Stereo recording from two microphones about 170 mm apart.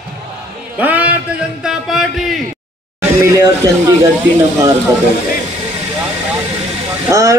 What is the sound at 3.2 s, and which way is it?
Speech, 20° right (ahead or behind).